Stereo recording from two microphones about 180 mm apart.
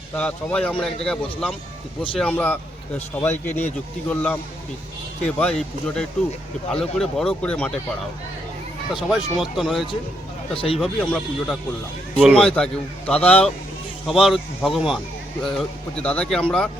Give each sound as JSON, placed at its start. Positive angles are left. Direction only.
{"t": 0.2, "sound": "speech", "side_deg": 5}
{"t": 8.9, "sound": "speech", "side_deg": 0}
{"t": 10.5, "sound": "speech", "side_deg": 30}
{"t": 10.8, "sound": "speech", "side_deg": 0}
{"t": 12.4, "sound": "speech", "side_deg": 5}